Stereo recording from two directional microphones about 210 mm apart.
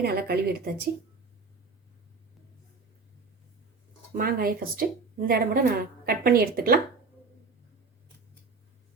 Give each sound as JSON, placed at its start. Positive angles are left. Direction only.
{"t": 0.0, "sound": "a woman's voice", "side_deg": -50}
{"t": 4.1, "sound": "a woman's voice", "side_deg": -45}